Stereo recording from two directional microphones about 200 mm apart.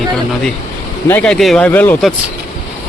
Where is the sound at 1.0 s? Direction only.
5° left (ahead or behind).